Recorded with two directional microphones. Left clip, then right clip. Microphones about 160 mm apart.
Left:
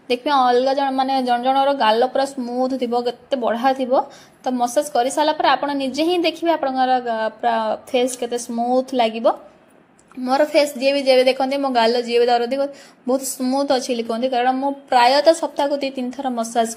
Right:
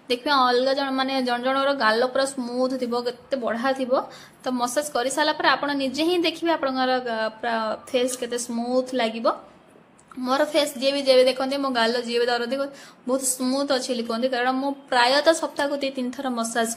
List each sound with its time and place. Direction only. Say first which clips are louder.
0.1 s a woman's voice: left 4 dB; 10° left (ahead or behind)